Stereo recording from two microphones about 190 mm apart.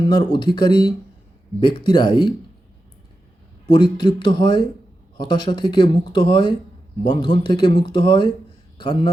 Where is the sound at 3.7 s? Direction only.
25° left (ahead or behind).